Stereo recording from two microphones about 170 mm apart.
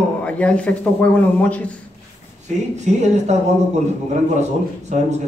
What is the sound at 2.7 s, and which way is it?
Speech, 45° right (ahead or behind).